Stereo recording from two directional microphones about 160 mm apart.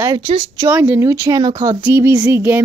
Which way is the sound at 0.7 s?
10° right (ahead or behind).